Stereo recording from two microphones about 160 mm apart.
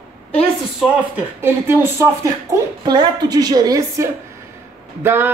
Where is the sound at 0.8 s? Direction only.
10° right (ahead or behind).